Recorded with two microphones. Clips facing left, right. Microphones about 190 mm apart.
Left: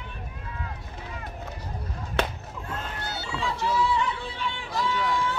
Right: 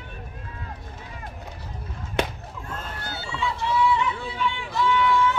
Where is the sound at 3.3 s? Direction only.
40° left (ahead or behind).